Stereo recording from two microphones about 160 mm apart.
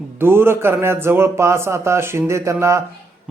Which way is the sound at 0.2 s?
15° right (ahead or behind).